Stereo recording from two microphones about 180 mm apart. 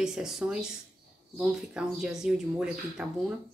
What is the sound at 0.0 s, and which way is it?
Speech, 5° right (ahead or behind).